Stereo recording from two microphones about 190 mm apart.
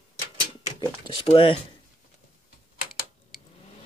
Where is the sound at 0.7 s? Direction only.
25° left (ahead or behind).